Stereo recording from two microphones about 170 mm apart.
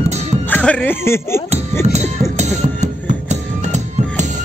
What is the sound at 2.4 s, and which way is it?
Music, 45° right (ahead or behind).